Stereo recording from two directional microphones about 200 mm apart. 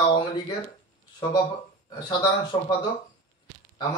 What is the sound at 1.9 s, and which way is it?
Speech, 20° left (ahead or behind).